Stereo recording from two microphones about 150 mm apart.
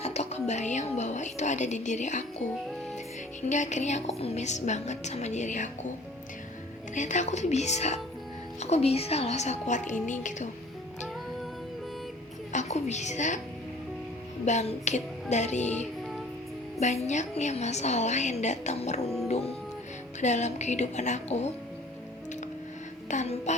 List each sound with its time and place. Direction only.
0.0 s speech: 45° left (ahead or behind)
3.5 s a woman's voice: 55° left (ahead or behind)
6.9 s a woman's voice: 55° left (ahead or behind)
12.5 s a woman's voice: 50° left (ahead or behind)
14.4 s a woman's voice: 50° left (ahead or behind)
20.2 s a woman's voice: 50° left (ahead or behind)
23.0 s a woman's voice: 50° left (ahead or behind)